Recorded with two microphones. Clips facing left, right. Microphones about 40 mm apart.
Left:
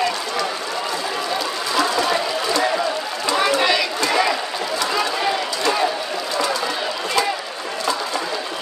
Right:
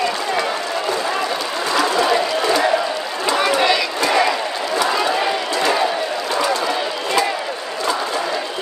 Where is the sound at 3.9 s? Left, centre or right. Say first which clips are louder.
Right 2 dB; centre.